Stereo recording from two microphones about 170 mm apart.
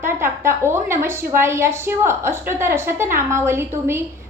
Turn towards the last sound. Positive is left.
turn(degrees=-15)  # may be behind; listen again after turning